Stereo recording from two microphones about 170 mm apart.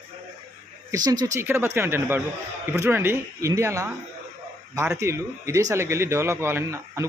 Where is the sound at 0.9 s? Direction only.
20° right (ahead or behind).